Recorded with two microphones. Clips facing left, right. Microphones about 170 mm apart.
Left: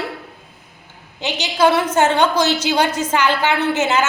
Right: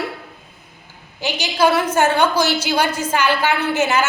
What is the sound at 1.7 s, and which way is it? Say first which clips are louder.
A woman's voice: left 1 dB; 20° left (ahead or behind).